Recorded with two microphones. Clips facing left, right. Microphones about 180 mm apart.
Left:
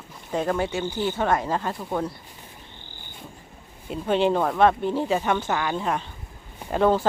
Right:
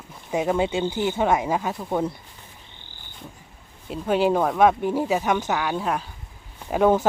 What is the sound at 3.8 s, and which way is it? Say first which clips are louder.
Speech: right 1 dB; centre (ahead or behind).